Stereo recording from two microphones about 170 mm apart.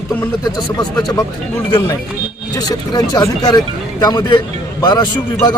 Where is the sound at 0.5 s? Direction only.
20° left (ahead or behind).